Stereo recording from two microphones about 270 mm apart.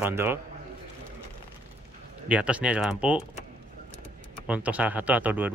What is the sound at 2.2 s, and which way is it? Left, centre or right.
Speech, centre.